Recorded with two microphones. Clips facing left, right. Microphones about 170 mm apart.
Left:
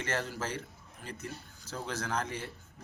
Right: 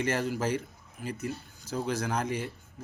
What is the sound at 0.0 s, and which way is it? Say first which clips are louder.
A man's voice: right 6 dB; 10° right (ahead or behind).